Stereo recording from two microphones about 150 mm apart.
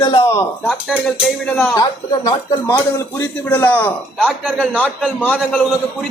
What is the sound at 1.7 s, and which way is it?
A man's voice, 25° left (ahead or behind).